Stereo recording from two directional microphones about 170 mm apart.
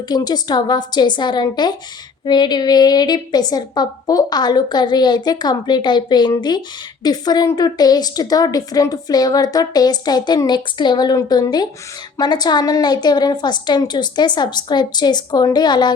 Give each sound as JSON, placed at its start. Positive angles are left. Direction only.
{"t": 0.1, "sound": "a woman's voice", "side_deg": 25}